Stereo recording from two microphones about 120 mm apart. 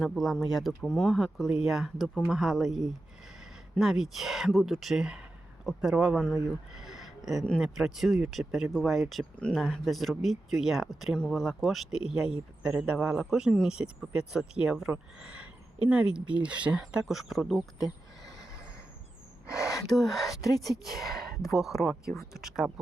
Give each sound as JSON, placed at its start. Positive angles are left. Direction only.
{"t": 0.0, "sound": "speech", "side_deg": 0}
{"t": 17.7, "sound": "a sound", "side_deg": 30}
{"t": 19.5, "sound": "gasp", "side_deg": 25}
{"t": 19.7, "sound": "speech", "side_deg": 0}